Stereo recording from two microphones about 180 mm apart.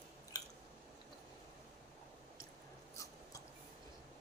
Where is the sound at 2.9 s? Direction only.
15° left (ahead or behind).